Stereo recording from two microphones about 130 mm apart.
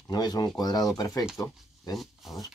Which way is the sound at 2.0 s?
Centre (ahead or behind).